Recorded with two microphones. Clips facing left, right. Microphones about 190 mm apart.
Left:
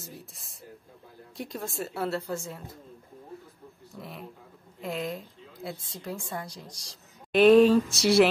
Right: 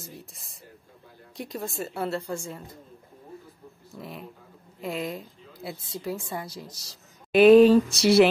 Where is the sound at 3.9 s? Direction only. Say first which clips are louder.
Right 2 dB; 5° right (ahead or behind).